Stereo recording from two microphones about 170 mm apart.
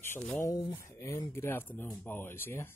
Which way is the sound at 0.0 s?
15° left (ahead or behind).